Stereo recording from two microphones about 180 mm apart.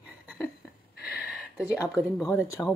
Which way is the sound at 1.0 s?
10° right (ahead or behind).